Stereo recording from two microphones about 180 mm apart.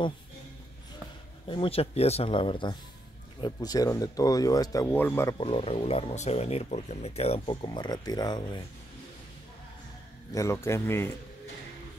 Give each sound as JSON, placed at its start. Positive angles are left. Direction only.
{"t": 1.5, "sound": "speech", "side_deg": 30}
{"t": 5.4, "sound": "speech", "side_deg": 30}
{"t": 10.3, "sound": "speech", "side_deg": 15}